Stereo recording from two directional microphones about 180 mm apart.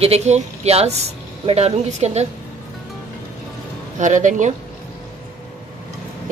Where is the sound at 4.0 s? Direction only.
45° right (ahead or behind).